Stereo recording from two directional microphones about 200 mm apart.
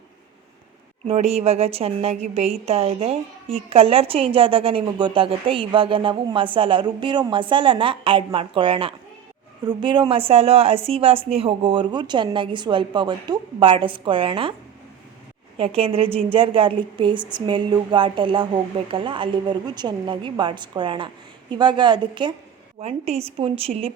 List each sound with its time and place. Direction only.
1.0 s a woman's voice: 30° right (ahead or behind)
15.5 s a woman's voice: 30° right (ahead or behind)